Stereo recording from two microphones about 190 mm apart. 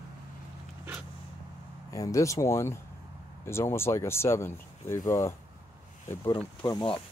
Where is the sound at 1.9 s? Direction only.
15° left (ahead or behind).